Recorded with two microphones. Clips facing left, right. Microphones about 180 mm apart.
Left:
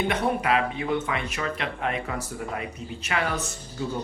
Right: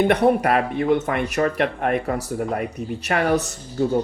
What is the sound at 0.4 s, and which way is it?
Speech, 50° right (ahead or behind).